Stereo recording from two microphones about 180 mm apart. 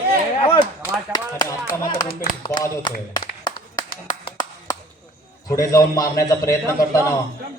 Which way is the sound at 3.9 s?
55° left (ahead or behind).